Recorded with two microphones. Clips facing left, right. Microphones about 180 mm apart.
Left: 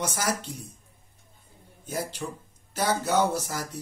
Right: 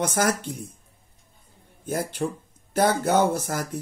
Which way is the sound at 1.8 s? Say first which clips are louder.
Right 6 dB; 55° right (ahead or behind).